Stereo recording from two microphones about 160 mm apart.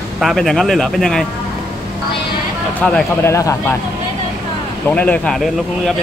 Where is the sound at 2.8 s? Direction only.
10° left (ahead or behind).